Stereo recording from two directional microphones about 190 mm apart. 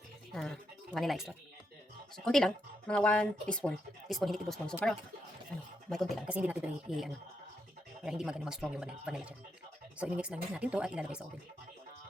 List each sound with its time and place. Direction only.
0.3 s speech: centre (ahead or behind)
5.9 s speech: centre (ahead or behind)